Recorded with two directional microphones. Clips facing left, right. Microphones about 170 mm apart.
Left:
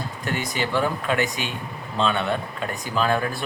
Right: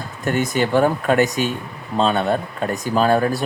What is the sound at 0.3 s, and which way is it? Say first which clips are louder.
A man's voice: right 8 dB; 50° right (ahead or behind).